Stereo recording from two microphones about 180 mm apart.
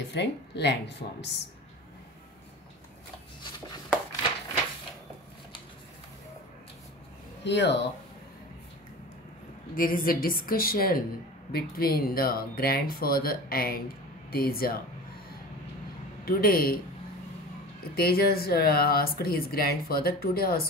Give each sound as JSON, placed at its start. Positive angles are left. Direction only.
{"t": 0.1, "sound": "a woman's voice", "side_deg": 70}
{"t": 7.4, "sound": "a woman's voice", "side_deg": 70}
{"t": 9.8, "sound": "a woman's voice", "side_deg": 50}
{"t": 16.3, "sound": "speech", "side_deg": 55}
{"t": 17.9, "sound": "speech", "side_deg": 55}